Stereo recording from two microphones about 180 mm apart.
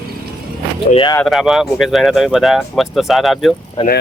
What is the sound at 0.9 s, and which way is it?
Speech, 25° left (ahead or behind).